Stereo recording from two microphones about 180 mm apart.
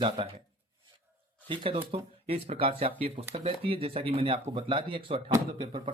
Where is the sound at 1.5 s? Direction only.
30° right (ahead or behind).